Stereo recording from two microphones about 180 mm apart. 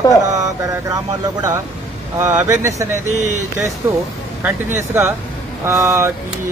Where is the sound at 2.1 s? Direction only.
15° right (ahead or behind).